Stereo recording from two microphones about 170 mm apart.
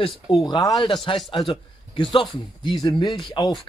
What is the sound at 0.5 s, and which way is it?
Speech, 25° left (ahead or behind).